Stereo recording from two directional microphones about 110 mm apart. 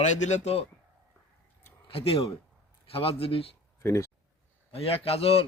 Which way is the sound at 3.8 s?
25° left (ahead or behind).